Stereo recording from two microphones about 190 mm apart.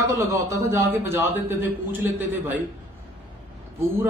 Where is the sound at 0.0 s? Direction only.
15° right (ahead or behind).